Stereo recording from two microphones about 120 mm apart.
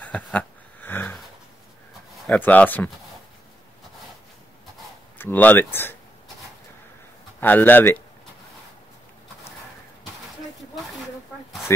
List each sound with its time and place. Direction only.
0.0 s a sound: 10° left (ahead or behind)
2.2 s speech: 10° left (ahead or behind)
5.2 s speech: 15° left (ahead or behind)
7.3 s speech: 15° left (ahead or behind)